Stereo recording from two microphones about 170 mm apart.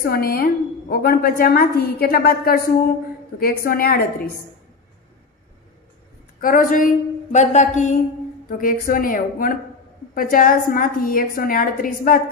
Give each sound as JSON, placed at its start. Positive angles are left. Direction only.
{"t": 0.0, "sound": "a woman's voice", "side_deg": 65}
{"t": 6.4, "sound": "a sound", "side_deg": 55}
{"t": 8.5, "sound": "a woman's voice", "side_deg": 55}